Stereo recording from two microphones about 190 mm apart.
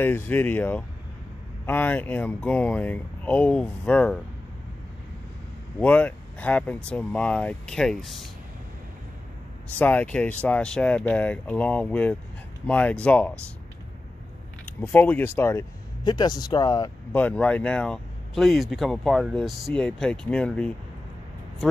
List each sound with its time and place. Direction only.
0.0 s speech: 10° left (ahead or behind)
5.8 s speech: 10° left (ahead or behind)
9.8 s speech: 10° left (ahead or behind)
14.7 s speech: 10° left (ahead or behind)
17.1 s speech: 10° left (ahead or behind)